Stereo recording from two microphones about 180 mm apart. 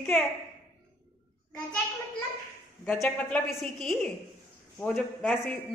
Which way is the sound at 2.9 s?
10° left (ahead or behind).